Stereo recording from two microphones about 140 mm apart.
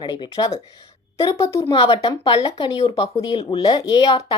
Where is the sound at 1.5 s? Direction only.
40° left (ahead or behind).